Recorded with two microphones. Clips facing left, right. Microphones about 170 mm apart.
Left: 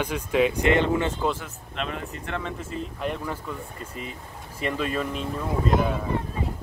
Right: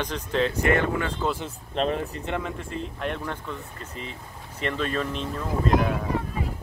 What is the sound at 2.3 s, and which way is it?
Speech, 20° right (ahead or behind).